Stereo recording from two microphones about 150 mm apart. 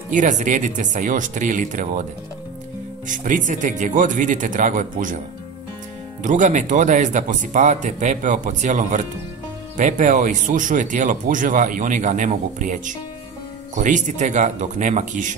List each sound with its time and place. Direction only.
0.1 s speech: 55° right (ahead or behind)
3.1 s speech: 60° right (ahead or behind)
6.2 s speech: 55° right (ahead or behind)